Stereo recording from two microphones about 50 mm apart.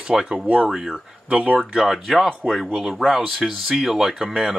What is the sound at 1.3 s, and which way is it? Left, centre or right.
Speech, right.